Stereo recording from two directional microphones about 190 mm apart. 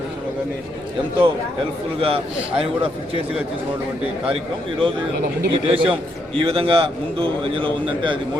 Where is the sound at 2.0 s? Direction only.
30° right (ahead or behind).